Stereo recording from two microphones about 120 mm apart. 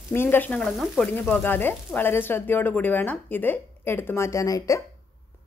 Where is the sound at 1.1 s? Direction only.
15° left (ahead or behind).